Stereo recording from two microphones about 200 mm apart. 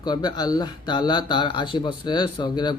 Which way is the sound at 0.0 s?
20° left (ahead or behind).